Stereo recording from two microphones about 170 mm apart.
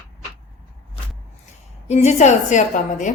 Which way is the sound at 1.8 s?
40° left (ahead or behind).